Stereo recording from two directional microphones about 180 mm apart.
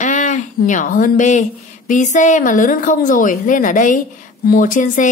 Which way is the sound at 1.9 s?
45° left (ahead or behind).